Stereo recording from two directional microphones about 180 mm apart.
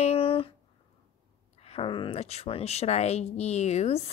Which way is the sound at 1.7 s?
30° left (ahead or behind).